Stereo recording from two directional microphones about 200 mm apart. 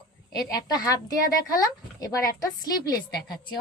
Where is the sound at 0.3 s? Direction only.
20° left (ahead or behind).